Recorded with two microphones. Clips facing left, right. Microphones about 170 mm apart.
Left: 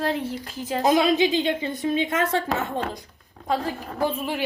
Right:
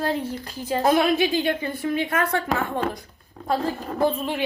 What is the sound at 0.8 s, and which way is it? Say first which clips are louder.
A woman's voice: left 1 dB; 20° left (ahead or behind).